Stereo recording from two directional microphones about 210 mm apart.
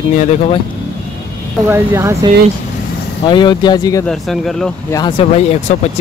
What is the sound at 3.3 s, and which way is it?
Speech, 20° left (ahead or behind).